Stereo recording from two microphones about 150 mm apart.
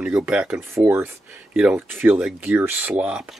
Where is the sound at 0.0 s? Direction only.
10° right (ahead or behind).